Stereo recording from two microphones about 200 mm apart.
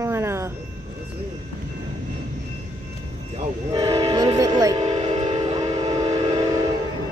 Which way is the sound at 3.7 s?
20° right (ahead or behind).